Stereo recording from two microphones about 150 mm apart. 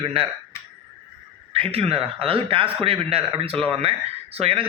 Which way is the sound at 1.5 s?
40° right (ahead or behind).